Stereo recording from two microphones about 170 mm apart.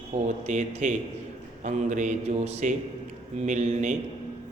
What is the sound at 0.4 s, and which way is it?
A man's voice, 45° right (ahead or behind).